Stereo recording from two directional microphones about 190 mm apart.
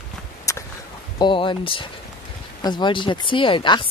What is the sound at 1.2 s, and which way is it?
Speech, 25° left (ahead or behind).